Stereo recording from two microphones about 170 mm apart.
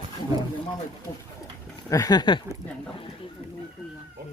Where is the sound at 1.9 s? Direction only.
20° left (ahead or behind).